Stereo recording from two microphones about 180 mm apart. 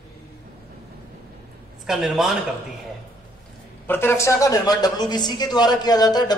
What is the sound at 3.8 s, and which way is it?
Speech, 15° left (ahead or behind).